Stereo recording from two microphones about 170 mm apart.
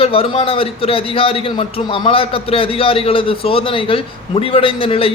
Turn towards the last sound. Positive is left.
turn(degrees=35)  # may be behind; listen again after turning